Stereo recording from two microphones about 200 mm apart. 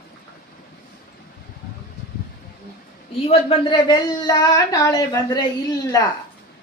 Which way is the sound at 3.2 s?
25° left (ahead or behind).